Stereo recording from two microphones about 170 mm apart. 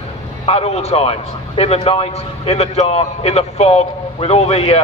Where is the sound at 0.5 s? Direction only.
35° left (ahead or behind).